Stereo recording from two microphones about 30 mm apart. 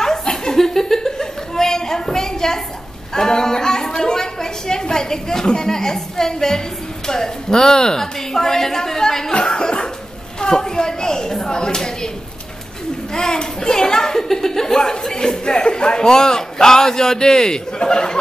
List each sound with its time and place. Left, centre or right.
0.0 s chuckle: centre
3.2 s a sound: left
7.1 s a woman's voice: centre
9.3 s speech: left
13.1 s speech: left